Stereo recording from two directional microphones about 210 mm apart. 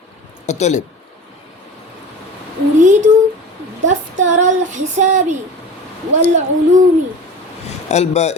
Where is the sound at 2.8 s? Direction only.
35° right (ahead or behind).